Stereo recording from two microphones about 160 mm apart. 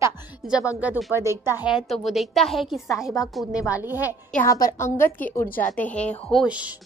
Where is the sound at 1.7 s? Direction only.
Centre (ahead or behind).